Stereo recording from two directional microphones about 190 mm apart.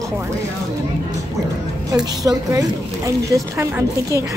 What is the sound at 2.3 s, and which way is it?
Speech, 15° right (ahead or behind).